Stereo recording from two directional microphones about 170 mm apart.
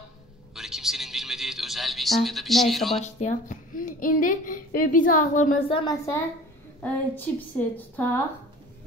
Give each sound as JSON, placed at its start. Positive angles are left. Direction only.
{"t": 0.6, "sound": "a sound", "side_deg": 0}
{"t": 3.2, "sound": "a woman's voice", "side_deg": 50}
{"t": 5.7, "sound": "a woman's voice", "side_deg": 30}
{"t": 6.8, "sound": "a woman's voice", "side_deg": 10}